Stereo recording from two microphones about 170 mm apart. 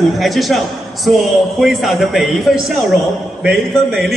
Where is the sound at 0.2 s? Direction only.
Centre (ahead or behind).